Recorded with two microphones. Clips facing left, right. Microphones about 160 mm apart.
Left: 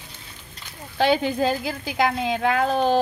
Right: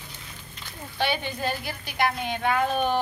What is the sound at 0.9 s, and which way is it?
Speech, 90° left.